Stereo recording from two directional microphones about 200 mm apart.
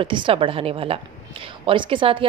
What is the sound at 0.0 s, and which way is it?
A woman's voice, 25° right (ahead or behind).